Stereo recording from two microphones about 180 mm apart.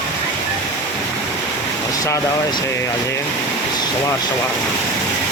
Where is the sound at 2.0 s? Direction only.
20° left (ahead or behind).